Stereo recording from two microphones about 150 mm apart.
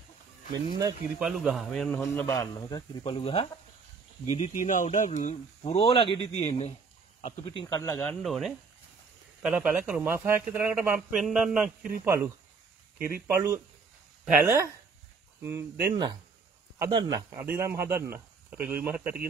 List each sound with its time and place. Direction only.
1.2 s speech: 5° right (ahead or behind)
2.0 s a man's voice: 15° left (ahead or behind)
3.0 s speech: 45° left (ahead or behind)
4.3 s speech: 50° left (ahead or behind)
7.4 s a man's voice: 30° left (ahead or behind)
8.0 s speech: 5° left (ahead or behind); by 11.0 s 15° right (ahead or behind)
11.0 s speech: centre (ahead or behind)
12.0 s speech: 20° right (ahead or behind)